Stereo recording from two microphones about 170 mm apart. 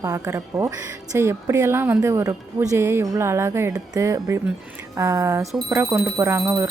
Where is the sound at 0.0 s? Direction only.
20° right (ahead or behind).